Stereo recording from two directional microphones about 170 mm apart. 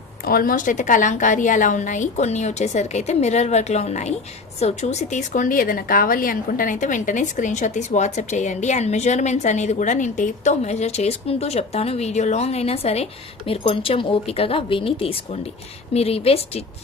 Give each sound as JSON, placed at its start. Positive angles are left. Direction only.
{"t": 0.3, "sound": "speech", "side_deg": 60}